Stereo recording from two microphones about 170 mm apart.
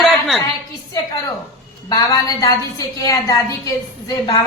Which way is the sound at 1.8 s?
20° left (ahead or behind).